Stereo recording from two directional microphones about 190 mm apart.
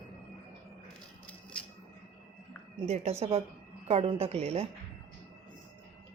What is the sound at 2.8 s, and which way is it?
A woman's voice, 35° right (ahead or behind).